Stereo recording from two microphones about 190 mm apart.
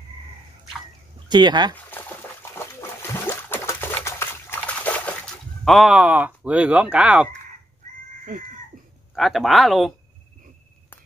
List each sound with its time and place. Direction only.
1.3 s speech: 25° right (ahead or behind)
1.9 s a sound: 10° left (ahead or behind); by 7.2 s 5° right (ahead or behind)
8.3 s cat: 45° right (ahead or behind)
9.1 s speech: centre (ahead or behind)